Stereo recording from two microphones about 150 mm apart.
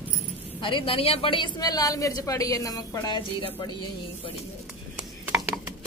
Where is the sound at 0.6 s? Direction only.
35° left (ahead or behind).